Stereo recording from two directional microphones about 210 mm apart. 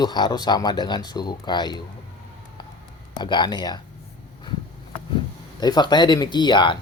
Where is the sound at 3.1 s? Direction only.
20° left (ahead or behind).